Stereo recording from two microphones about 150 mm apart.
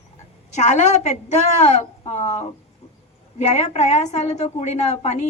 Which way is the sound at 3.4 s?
50° left (ahead or behind).